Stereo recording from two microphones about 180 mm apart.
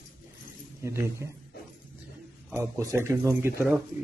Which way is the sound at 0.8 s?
15° right (ahead or behind).